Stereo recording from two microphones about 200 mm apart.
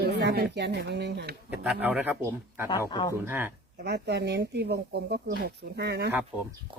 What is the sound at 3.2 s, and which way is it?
Speech, 10° right (ahead or behind).